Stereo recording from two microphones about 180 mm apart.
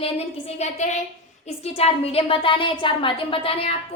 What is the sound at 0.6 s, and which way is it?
A woman's voice, 40° left (ahead or behind).